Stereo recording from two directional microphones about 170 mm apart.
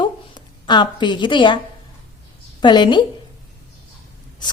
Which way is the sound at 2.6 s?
25° left (ahead or behind).